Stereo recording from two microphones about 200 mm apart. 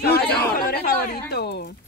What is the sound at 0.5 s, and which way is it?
Speech, 50° left (ahead or behind).